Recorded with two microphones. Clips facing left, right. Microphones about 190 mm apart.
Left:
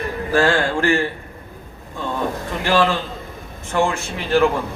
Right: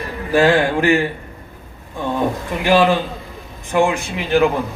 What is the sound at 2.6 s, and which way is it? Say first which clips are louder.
A man's voice: right 4 dB; 15° right (ahead or behind).